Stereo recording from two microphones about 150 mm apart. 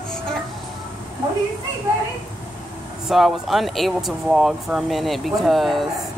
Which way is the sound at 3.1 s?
Centre (ahead or behind).